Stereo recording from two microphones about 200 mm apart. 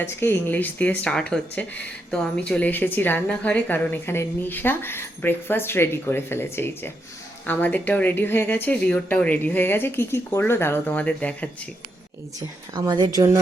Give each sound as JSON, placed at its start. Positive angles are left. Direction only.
{"t": 0.0, "sound": "a woman's voice", "side_deg": 10}
{"t": 12.4, "sound": "a woman's voice", "side_deg": -20}